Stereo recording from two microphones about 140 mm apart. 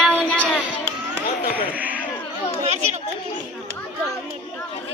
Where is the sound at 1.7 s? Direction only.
10° right (ahead or behind).